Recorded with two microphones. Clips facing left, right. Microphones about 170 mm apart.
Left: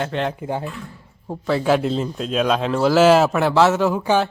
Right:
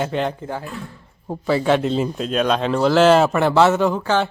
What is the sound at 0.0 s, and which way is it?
A man's voice, 5° right (ahead or behind).